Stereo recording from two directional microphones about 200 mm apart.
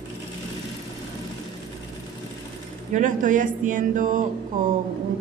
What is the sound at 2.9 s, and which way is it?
Speech, 40° right (ahead or behind).